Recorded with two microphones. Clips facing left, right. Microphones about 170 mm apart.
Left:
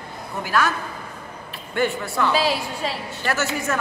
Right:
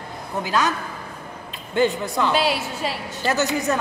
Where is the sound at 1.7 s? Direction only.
20° right (ahead or behind).